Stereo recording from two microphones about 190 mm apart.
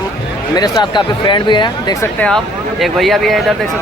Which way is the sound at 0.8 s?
25° left (ahead or behind).